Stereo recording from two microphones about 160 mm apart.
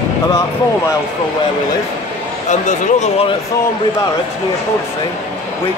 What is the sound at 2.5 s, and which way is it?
Speech, 50° left (ahead or behind).